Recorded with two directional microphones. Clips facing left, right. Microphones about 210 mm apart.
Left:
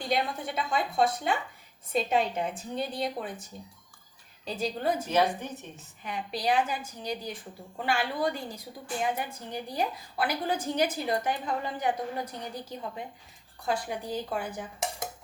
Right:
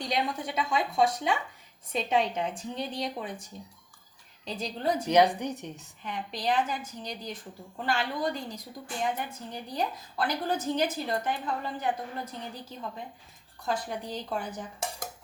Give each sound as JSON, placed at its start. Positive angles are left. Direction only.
{"t": 0.0, "sound": "a woman's voice", "side_deg": 5}
{"t": 5.0, "sound": "a woman's voice", "side_deg": -15}
{"t": 6.0, "sound": "a woman's voice", "side_deg": 10}
{"t": 13.7, "sound": "a woman's voice", "side_deg": 10}